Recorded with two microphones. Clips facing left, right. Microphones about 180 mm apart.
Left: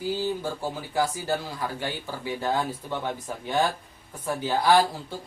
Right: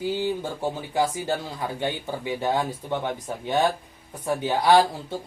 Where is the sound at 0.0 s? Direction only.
20° right (ahead or behind).